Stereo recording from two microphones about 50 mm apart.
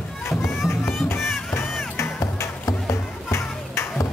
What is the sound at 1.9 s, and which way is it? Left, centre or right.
Music, left.